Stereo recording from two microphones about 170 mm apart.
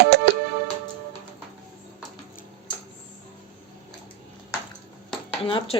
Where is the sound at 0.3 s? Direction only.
80° right.